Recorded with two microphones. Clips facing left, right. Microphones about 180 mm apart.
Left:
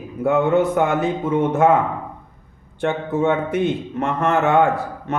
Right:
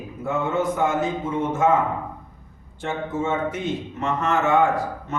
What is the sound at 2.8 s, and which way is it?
A man's voice, 65° left (ahead or behind).